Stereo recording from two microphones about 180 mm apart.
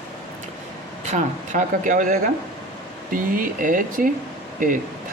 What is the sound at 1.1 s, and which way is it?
Speech, 45° right (ahead or behind).